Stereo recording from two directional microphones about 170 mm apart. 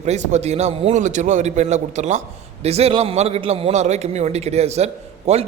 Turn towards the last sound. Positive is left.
turn(degrees=-40)  # may be behind; listen again after turning